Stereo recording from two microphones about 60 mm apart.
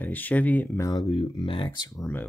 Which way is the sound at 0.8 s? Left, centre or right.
Left.